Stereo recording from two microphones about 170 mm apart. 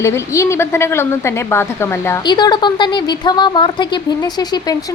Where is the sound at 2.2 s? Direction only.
25° left (ahead or behind).